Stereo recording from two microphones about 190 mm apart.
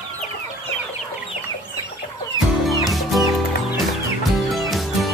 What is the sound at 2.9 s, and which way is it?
Music, centre (ahead or behind).